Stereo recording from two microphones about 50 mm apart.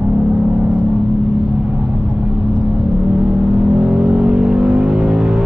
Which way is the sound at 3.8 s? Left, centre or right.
Centre.